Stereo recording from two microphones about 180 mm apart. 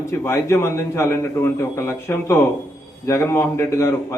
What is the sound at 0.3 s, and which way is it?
A man's voice, 15° left (ahead or behind).